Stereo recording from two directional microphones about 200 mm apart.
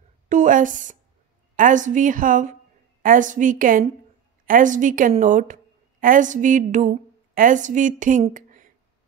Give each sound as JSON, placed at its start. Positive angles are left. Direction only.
{"t": 0.3, "sound": "a woman's voice", "side_deg": -40}